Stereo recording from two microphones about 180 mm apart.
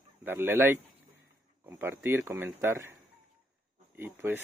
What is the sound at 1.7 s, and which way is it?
Speech, 15° right (ahead or behind).